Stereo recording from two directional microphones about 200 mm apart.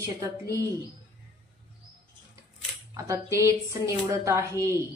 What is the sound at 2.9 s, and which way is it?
A woman's voice, 15° right (ahead or behind).